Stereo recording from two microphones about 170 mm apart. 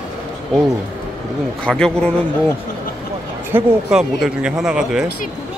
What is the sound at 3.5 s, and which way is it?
Speech, 5° right (ahead or behind).